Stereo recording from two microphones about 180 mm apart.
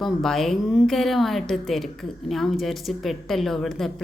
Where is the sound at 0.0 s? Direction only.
Centre (ahead or behind).